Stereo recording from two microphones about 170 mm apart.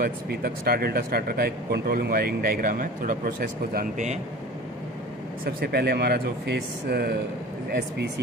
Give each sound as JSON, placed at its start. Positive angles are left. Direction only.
{"t": 0.0, "sound": "speech", "side_deg": -65}
{"t": 5.4, "sound": "speech", "side_deg": -65}